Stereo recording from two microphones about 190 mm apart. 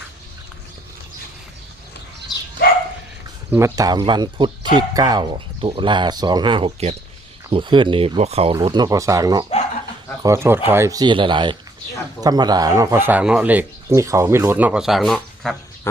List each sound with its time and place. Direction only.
2.6 s dog: 55° left (ahead or behind)
3.5 s speech: 15° right (ahead or behind); by 8.5 s 35° right (ahead or behind)
8.5 s speech: 20° right (ahead or behind); by 15.5 s centre (ahead or behind)